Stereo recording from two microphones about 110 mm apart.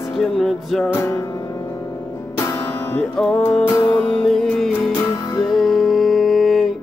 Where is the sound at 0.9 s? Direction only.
25° left (ahead or behind).